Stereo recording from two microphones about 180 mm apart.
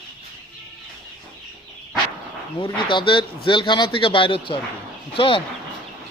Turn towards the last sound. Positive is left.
turn(degrees=30)  # may be behind; listen again after turning